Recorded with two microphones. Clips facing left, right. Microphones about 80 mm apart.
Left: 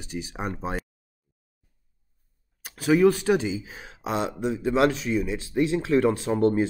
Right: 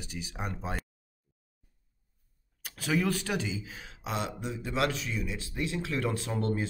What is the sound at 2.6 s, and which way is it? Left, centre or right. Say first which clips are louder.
Speech: left 10 dB; left.